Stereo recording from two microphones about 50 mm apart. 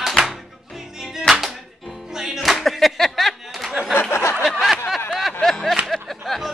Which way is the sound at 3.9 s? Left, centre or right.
Left.